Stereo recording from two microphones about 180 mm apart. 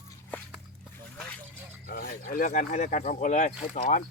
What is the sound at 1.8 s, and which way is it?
Speech, 60° left (ahead or behind).